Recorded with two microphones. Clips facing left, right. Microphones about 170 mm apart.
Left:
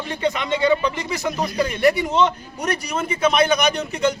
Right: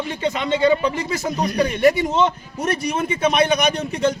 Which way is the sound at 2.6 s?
25° right (ahead or behind).